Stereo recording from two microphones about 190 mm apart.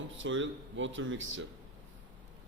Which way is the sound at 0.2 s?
85° right.